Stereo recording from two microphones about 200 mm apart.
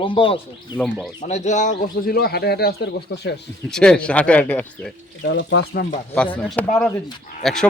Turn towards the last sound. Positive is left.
turn(degrees=0)  # may be behind; listen again after turning